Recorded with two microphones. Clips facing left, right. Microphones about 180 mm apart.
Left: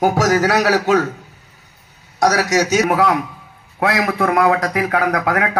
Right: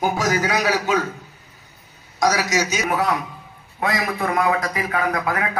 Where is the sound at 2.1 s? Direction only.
70° left (ahead or behind).